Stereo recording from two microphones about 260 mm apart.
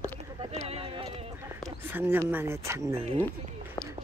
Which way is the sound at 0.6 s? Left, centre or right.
Right.